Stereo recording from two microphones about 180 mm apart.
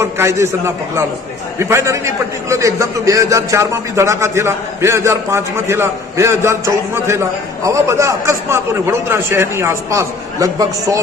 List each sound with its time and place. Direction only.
0.0 s a man's voice: 15° right (ahead or behind)